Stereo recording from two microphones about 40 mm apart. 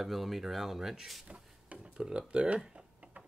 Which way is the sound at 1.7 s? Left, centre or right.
Centre.